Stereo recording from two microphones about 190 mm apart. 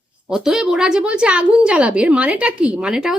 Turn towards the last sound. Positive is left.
turn(degrees=-5)  # may be behind; listen again after turning